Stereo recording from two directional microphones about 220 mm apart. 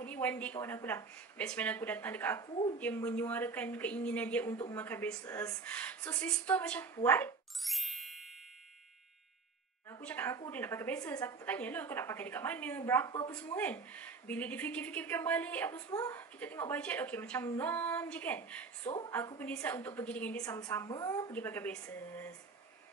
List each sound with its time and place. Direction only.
0.0 s speech: 5° left (ahead or behind)
7.0 s a sound: 10° left (ahead or behind)
9.8 s speech: 10° left (ahead or behind)
18.9 s a woman's voice: 20° left (ahead or behind)
19.1 s speech: 10° left (ahead or behind)